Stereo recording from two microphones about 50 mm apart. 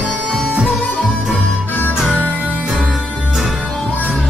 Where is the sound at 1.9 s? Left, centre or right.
Centre.